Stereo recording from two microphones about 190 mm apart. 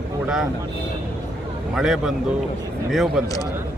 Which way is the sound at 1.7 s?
Centre (ahead or behind).